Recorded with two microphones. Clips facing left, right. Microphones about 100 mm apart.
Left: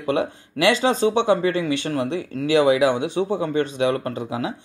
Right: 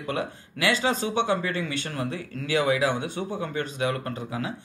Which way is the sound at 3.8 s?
60° left (ahead or behind).